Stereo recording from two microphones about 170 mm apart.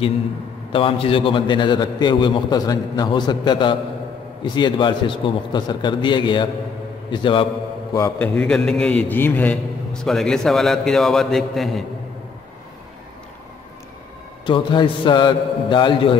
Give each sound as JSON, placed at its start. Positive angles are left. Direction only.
{"t": 0.7, "sound": "a man's voice", "side_deg": 30}
{"t": 7.9, "sound": "a man's voice", "side_deg": 15}
{"t": 8.4, "sound": "a man's voice", "side_deg": 5}
{"t": 14.4, "sound": "a man's voice", "side_deg": 30}